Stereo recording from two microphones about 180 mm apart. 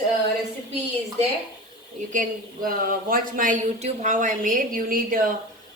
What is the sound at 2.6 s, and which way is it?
A woman's voice, 50° right (ahead or behind).